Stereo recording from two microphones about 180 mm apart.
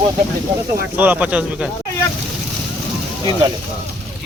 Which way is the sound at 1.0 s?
10° right (ahead or behind).